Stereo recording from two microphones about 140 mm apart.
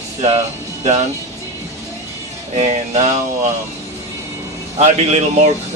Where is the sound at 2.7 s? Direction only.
55° right (ahead or behind).